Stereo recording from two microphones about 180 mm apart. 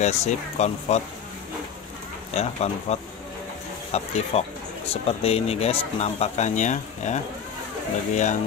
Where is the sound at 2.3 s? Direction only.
35° left (ahead or behind).